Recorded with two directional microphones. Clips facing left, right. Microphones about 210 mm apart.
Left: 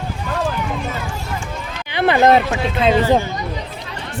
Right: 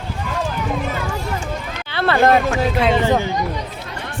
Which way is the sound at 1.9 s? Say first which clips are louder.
Left 2 dB; 15° left (ahead or behind).